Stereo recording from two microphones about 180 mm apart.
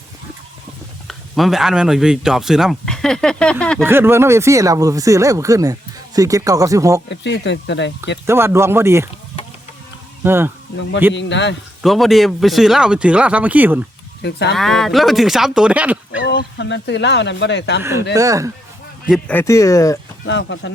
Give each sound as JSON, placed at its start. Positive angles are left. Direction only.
{"t": 1.0, "sound": "speech", "side_deg": 0}
{"t": 3.8, "sound": "speech", "side_deg": -10}
{"t": 7.1, "sound": "speech", "side_deg": 80}
{"t": 8.3, "sound": "speech", "side_deg": -15}
{"t": 10.2, "sound": "speech", "side_deg": -10}
{"t": 11.1, "sound": "speech", "side_deg": 80}
{"t": 11.8, "sound": "speech", "side_deg": 0}
{"t": 14.2, "sound": "speech", "side_deg": 70}
{"t": 14.5, "sound": "speech", "side_deg": 0}
{"t": 16.2, "sound": "speech", "side_deg": 65}
{"t": 18.1, "sound": "speech", "side_deg": -20}
{"t": 19.3, "sound": "speech", "side_deg": 15}
{"t": 20.2, "sound": "speech", "side_deg": 80}